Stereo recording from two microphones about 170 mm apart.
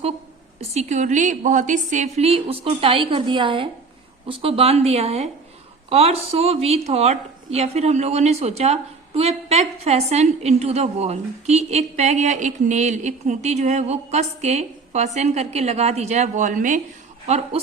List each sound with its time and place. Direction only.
0.7 s a woman's voice: 40° right (ahead or behind)